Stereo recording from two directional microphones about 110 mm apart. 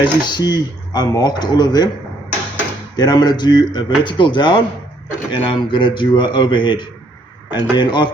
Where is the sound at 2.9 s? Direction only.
40° left (ahead or behind).